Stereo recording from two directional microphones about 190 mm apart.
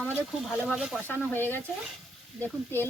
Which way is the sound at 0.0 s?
5° left (ahead or behind).